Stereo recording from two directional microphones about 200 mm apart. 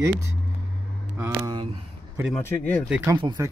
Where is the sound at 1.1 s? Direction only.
15° right (ahead or behind).